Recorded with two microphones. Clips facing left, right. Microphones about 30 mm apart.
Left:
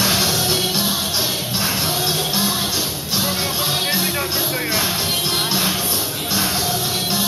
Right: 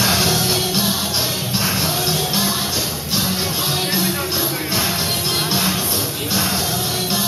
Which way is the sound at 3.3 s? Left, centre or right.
Centre.